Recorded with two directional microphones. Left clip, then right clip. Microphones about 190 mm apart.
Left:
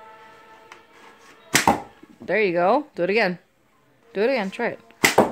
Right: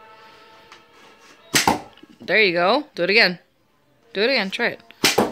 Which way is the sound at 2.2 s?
5° left (ahead or behind).